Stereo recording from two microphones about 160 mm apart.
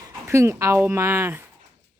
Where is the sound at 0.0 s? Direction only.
15° right (ahead or behind).